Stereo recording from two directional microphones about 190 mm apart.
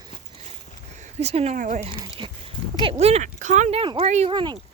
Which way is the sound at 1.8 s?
25° right (ahead or behind).